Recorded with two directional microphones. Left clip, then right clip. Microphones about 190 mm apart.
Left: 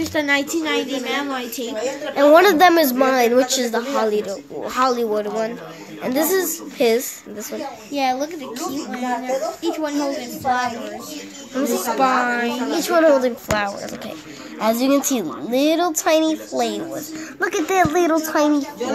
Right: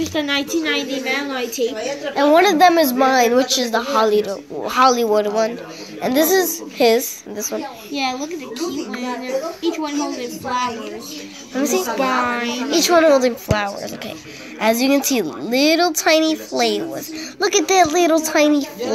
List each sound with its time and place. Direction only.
0.1 s a woman's voice: 20° left (ahead or behind)
0.5 s a woman's voice: 10° left (ahead or behind)
1.6 s a woman's voice: 20° left (ahead or behind)
3.9 s speech: 5° right (ahead or behind)
7.9 s a woman's voice: 15° left (ahead or behind)
11.5 s speech: 5° right (ahead or behind)
12.0 s a woman's voice: 10° left (ahead or behind)
12.7 s speech: 15° right (ahead or behind)